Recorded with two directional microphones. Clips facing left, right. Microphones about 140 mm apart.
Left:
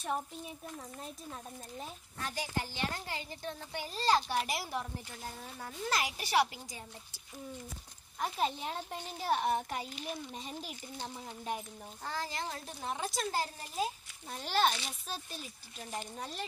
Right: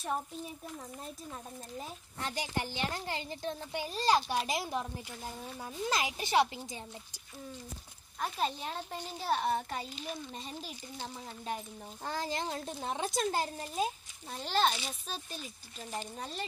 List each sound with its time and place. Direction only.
2.2 s a child's voice: 20° right (ahead or behind)
8.2 s a child's voice: 15° left (ahead or behind)
12.0 s a child's voice: 20° right (ahead or behind)
14.3 s a child's voice: 10° left (ahead or behind)